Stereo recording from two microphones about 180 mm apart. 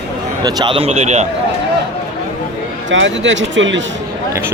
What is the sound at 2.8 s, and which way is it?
Speech, 90° right.